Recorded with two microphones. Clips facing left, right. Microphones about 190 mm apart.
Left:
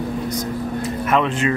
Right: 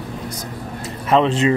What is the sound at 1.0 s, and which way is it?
Speech, 30° right (ahead or behind).